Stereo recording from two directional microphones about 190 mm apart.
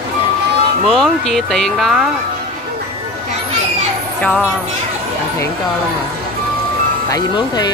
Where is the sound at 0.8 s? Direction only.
5° left (ahead or behind).